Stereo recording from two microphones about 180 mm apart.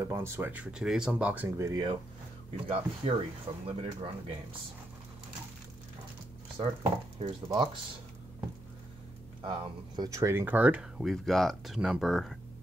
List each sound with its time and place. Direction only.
0.0 s speech: 15° right (ahead or behind); by 4.1 s 30° right (ahead or behind)
6.8 s speech: 30° right (ahead or behind)
9.4 s speech: 25° right (ahead or behind); by 12.4 s centre (ahead or behind)